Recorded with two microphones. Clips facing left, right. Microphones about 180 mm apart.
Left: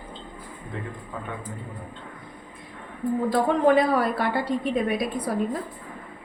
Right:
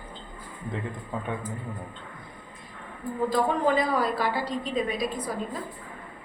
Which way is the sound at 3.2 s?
60° left (ahead or behind).